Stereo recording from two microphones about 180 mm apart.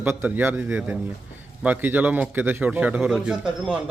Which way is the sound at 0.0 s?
10° right (ahead or behind).